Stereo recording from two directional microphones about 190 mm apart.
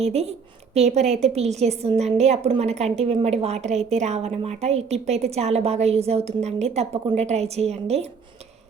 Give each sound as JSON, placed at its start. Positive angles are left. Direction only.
{"t": 0.0, "sound": "a woman's voice", "side_deg": -35}